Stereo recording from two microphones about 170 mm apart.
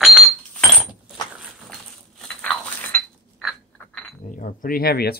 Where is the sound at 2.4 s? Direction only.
5° left (ahead or behind).